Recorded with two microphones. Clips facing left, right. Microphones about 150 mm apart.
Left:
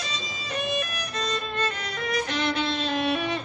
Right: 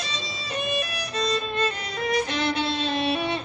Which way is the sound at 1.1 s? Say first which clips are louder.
Right 6 dB; 30° right (ahead or behind).